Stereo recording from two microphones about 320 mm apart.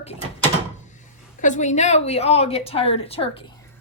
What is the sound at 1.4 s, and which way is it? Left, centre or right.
A woman's voice, left.